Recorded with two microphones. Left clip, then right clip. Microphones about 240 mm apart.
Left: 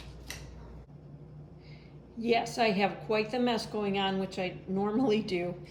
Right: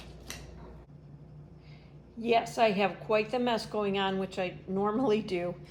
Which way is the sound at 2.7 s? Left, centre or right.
Right.